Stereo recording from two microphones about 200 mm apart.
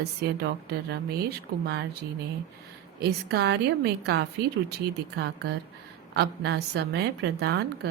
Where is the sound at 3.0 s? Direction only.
55° right (ahead or behind).